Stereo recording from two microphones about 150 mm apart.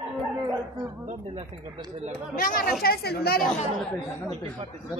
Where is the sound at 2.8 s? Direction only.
90° left.